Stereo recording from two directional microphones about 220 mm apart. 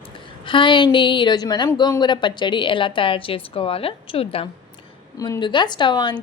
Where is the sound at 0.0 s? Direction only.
25° left (ahead or behind).